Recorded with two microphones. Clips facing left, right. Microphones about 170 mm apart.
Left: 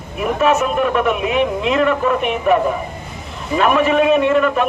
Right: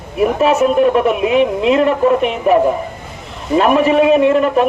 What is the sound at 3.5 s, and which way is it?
A man's voice, 30° right (ahead or behind).